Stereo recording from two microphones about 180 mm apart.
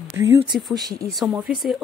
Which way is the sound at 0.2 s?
15° right (ahead or behind).